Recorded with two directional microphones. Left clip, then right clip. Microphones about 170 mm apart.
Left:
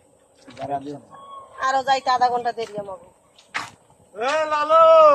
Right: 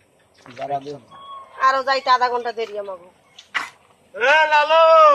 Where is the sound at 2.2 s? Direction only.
35° right (ahead or behind).